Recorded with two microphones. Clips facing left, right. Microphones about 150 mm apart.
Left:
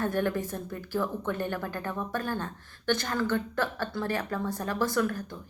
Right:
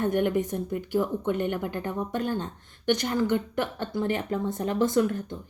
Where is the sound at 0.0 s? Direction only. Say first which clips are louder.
Right 4 dB; 20° right (ahead or behind).